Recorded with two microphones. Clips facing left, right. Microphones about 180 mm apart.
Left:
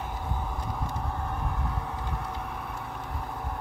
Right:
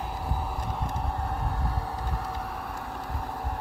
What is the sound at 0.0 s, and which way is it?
Vehicle, 35° right (ahead or behind).